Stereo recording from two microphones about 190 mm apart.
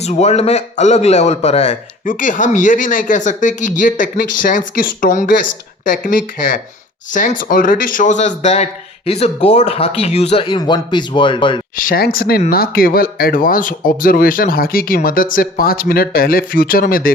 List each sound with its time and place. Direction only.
0.0 s a man's voice: 35° left (ahead or behind)
11.8 s a man's voice: 50° left (ahead or behind)